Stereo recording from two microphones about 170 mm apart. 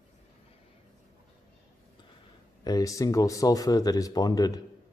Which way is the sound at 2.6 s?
20° left (ahead or behind).